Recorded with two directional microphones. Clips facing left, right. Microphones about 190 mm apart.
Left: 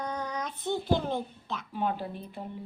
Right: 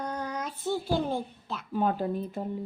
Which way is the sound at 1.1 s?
5° right (ahead or behind).